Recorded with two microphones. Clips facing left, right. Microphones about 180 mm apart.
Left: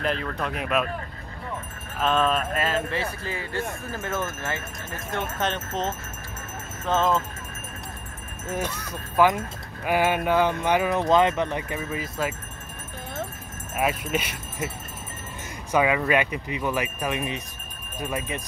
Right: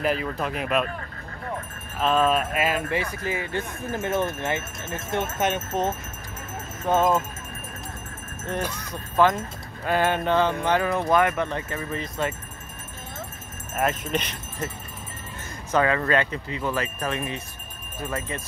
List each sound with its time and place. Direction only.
0.0 s speech: 5° right (ahead or behind)
2.0 s speech: 5° right (ahead or behind)
8.9 s speech: 10° left (ahead or behind)
13.7 s speech: 5° left (ahead or behind)
15.7 s speech: 10° left (ahead or behind)